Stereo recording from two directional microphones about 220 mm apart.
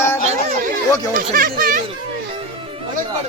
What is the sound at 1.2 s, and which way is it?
Speech, 40° right (ahead or behind).